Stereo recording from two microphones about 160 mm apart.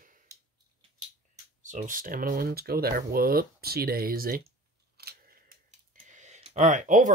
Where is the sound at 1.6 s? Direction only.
55° right (ahead or behind).